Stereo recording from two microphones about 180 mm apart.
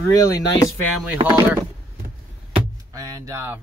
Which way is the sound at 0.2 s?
20° left (ahead or behind).